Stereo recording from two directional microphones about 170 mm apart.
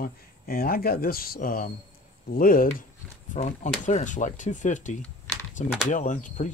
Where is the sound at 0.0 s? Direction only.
60° left (ahead or behind).